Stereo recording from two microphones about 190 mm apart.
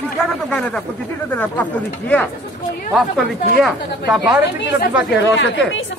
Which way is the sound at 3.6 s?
Centre (ahead or behind).